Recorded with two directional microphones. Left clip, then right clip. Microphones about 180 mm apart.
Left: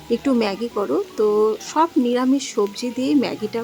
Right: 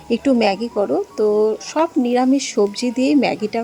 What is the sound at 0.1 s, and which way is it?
Speech, 15° right (ahead or behind).